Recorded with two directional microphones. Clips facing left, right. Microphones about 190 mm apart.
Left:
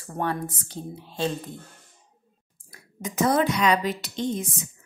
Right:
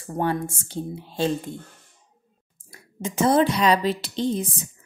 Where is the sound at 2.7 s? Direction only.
25° right (ahead or behind).